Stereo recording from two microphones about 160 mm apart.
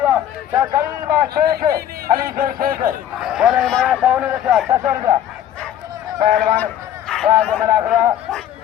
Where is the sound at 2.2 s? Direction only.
65° right (ahead or behind).